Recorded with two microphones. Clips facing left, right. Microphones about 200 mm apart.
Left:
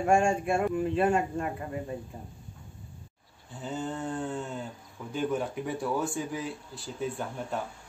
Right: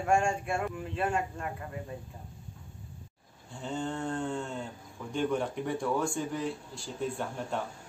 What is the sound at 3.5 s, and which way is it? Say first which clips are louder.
A man's voice: even; 5° left (ahead or behind).